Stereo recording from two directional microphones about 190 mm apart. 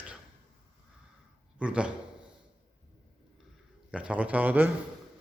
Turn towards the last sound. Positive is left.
turn(degrees=-10)  # may be behind; listen again after turning